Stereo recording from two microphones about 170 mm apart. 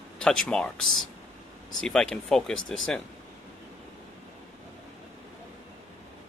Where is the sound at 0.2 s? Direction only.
5° left (ahead or behind).